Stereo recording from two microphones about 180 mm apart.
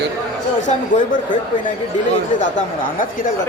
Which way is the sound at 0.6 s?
45° left (ahead or behind).